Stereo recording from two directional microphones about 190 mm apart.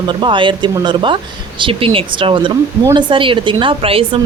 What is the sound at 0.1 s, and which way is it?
Speech, 25° right (ahead or behind).